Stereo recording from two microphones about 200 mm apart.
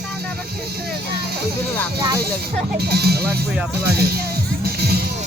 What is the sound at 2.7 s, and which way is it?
Speech, 50° right (ahead or behind).